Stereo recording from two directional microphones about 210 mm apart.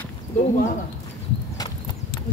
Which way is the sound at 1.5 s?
20° left (ahead or behind).